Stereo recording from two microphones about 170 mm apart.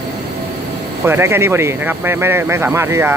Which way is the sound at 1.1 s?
15° right (ahead or behind).